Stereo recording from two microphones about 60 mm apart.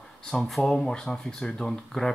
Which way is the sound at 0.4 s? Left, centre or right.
Centre.